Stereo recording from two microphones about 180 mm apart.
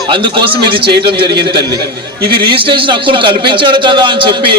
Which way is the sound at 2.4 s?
25° right (ahead or behind).